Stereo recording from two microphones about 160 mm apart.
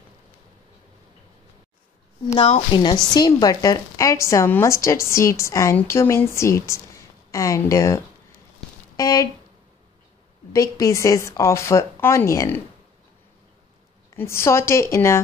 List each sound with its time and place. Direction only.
2.2 s a woman's voice: 40° left (ahead or behind)
3.1 s a woman's voice: 25° left (ahead or behind)
10.5 s a woman's voice: 20° left (ahead or behind)
14.1 s a woman's voice: 15° left (ahead or behind)